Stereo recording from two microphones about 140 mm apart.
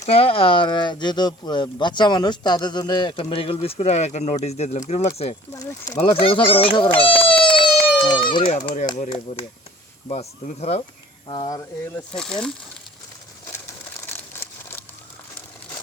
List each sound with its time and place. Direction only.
0.0 s speech: 45° left (ahead or behind)
6.9 s baby cry: 40° left (ahead or behind)
9.0 s speech: 40° left (ahead or behind)
10.1 s speech: 50° left (ahead or behind)
11.3 s speech: 30° left (ahead or behind)
12.1 s speech: 5° left (ahead or behind)
14.1 s crumpling: 15° left (ahead or behind)